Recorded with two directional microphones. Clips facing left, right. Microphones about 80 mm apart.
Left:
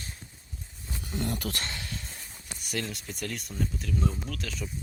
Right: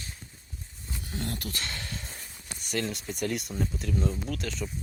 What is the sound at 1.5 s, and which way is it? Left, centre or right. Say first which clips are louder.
Speech: left 3 dB; left.